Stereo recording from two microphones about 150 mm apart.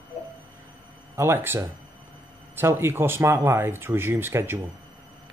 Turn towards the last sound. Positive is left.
turn(degrees=-15)  # may be behind; listen again after turning